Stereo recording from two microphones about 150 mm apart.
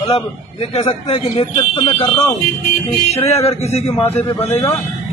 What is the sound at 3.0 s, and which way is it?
A man's voice, 45° left (ahead or behind).